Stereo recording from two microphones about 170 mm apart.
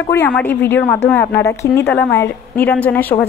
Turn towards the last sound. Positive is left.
turn(degrees=10)  # may be behind; listen again after turning